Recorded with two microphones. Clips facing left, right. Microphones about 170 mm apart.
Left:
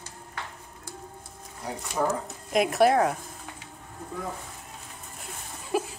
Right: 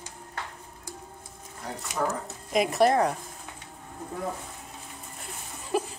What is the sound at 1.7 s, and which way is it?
Speech, 15° left (ahead or behind).